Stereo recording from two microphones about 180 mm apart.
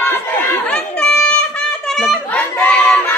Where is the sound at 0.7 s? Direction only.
5° left (ahead or behind).